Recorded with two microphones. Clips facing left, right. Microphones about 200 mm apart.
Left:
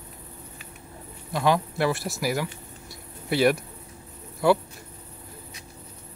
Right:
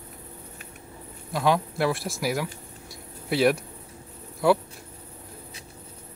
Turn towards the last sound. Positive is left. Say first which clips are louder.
# even
turn(degrees=0)  # may be behind; listen again after turning